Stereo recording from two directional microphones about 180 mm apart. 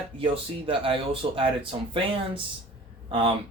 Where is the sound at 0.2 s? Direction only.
30° right (ahead or behind).